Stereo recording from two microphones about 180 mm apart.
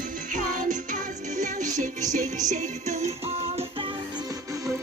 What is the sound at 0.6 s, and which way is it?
Music, 45° right (ahead or behind).